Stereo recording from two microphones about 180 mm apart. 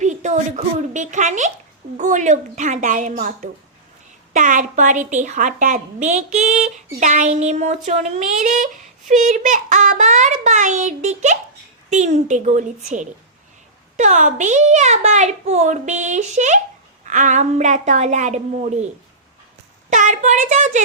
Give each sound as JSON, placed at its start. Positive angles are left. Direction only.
{"t": 0.0, "sound": "a child's voice", "side_deg": -40}
{"t": 19.9, "sound": "a child's voice", "side_deg": -45}